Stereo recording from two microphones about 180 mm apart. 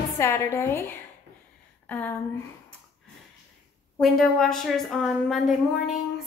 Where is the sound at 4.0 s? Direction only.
Centre (ahead or behind).